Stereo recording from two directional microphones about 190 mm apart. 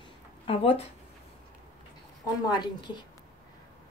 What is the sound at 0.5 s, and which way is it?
Speech, 30° left (ahead or behind).